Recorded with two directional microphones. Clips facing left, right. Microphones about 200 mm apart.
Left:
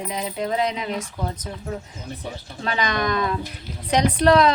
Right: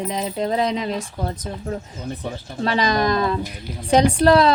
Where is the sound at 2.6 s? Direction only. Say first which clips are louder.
Right 4 dB; 35° right (ahead or behind).